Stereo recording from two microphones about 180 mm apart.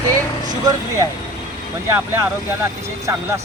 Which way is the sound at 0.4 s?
20° right (ahead or behind).